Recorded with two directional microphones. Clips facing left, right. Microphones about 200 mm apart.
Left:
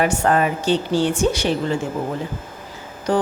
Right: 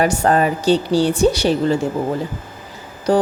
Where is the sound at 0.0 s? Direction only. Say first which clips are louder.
Right 2 dB; 35° right (ahead or behind).